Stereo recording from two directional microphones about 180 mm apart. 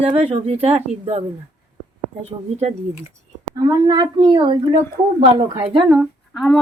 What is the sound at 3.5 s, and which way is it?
A woman's voice, 20° right (ahead or behind).